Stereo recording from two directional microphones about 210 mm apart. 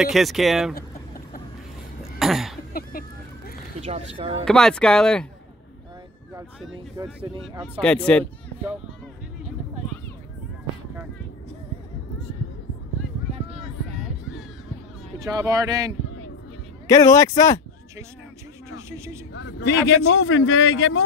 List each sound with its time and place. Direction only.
0.0 s speech: centre (ahead or behind)
2.1 s cough: centre (ahead or behind)
2.7 s a sound: 45° left (ahead or behind)
3.8 s speech: 30° right (ahead or behind)
4.5 s speech: 5° left (ahead or behind)
7.0 s speech: 15° right (ahead or behind)
7.6 s speech: 5° left (ahead or behind)
15.1 s speech: 15° right (ahead or behind)
16.8 s a man's voice: 15° left (ahead or behind)
18.8 s a sound: 15° right (ahead or behind)
19.3 s speech: 60° left (ahead or behind)